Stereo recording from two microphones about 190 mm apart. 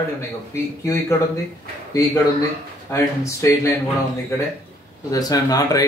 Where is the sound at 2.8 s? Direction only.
15° left (ahead or behind).